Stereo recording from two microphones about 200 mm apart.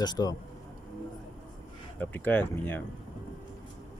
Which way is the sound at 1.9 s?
10° left (ahead or behind).